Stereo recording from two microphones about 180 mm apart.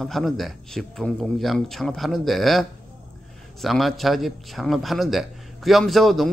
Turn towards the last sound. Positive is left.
turn(degrees=0)  # may be behind; listen again after turning